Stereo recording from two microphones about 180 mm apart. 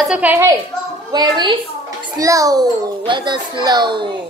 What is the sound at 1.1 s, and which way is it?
A child's voice, 25° right (ahead or behind).